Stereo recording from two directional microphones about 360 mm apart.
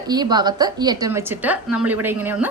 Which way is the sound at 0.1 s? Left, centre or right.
Centre.